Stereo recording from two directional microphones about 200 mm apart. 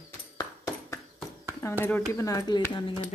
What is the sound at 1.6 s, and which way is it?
Speech, 10° left (ahead or behind).